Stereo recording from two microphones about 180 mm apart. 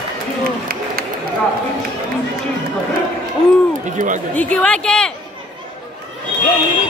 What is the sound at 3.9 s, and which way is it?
Speech, 45° right (ahead or behind).